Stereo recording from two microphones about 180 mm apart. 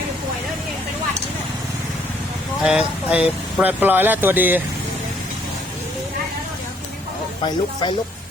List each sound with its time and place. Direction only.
2.6 s speech: 5° right (ahead or behind)
7.4 s speech: 25° left (ahead or behind)